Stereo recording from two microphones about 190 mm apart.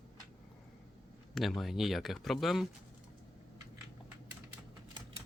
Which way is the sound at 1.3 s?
Centre (ahead or behind).